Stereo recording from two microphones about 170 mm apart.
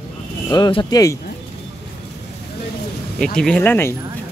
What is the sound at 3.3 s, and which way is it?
Speech, 5° left (ahead or behind).